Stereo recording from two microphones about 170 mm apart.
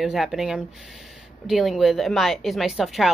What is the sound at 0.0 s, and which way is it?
A woman's voice, centre (ahead or behind).